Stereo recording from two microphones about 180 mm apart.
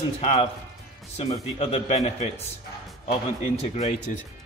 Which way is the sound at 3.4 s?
35° left (ahead or behind).